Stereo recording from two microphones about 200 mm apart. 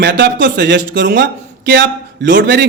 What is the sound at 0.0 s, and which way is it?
A man's voice, 60° right (ahead or behind).